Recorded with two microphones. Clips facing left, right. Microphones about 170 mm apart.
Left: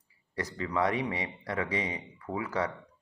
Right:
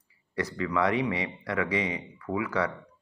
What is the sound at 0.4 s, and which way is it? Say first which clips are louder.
Speech: right 3 dB; 35° left (ahead or behind).